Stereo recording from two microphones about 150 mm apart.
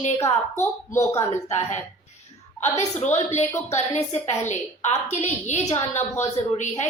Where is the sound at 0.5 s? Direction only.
20° left (ahead or behind).